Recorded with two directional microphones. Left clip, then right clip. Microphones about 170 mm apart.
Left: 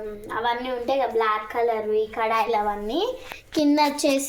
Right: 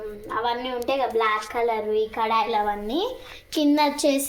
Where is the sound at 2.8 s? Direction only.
10° right (ahead or behind).